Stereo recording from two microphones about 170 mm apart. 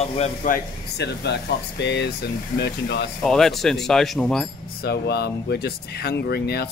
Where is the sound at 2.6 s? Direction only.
75° left (ahead or behind).